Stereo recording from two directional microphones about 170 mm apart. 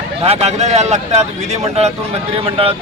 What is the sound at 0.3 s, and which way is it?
A man's voice, 40° right (ahead or behind).